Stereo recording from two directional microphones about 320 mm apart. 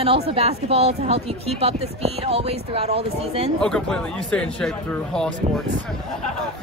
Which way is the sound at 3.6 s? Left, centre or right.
Centre.